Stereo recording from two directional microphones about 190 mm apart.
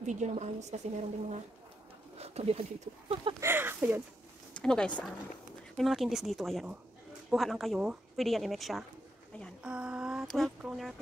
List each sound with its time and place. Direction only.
0.0 s a woman's voice: 40° right (ahead or behind)
3.3 s speech: 10° right (ahead or behind)
4.6 s speech: 5° left (ahead or behind)